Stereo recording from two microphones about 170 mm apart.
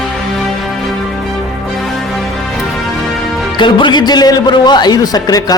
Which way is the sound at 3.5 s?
25° left (ahead or behind).